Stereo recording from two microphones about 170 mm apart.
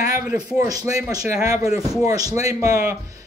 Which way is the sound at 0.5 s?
20° right (ahead or behind).